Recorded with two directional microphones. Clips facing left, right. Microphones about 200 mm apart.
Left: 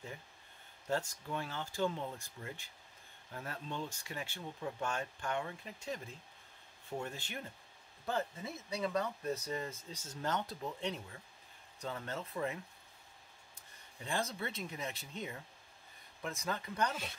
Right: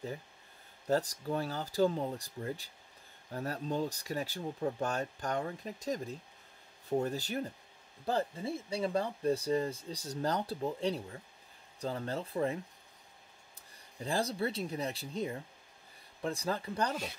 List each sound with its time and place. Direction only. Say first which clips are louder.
0.8 s speech: right 6 dB; 35° right (ahead or behind)
13.6 s speech: right 7 dB; 35° right (ahead or behind)